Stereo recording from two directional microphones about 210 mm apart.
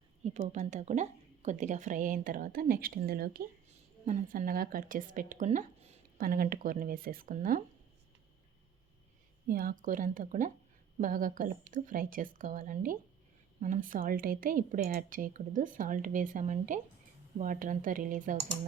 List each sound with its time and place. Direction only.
0.3 s speech: 35° right (ahead or behind)
9.5 s speech: 45° right (ahead or behind)